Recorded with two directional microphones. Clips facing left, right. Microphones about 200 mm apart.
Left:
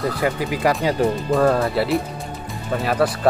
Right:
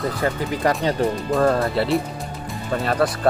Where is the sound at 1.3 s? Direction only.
Centre (ahead or behind).